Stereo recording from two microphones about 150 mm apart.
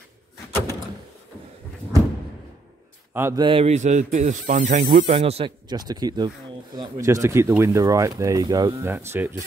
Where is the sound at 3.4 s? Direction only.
35° right (ahead or behind).